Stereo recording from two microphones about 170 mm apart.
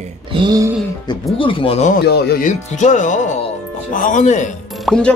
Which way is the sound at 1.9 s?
65° left (ahead or behind).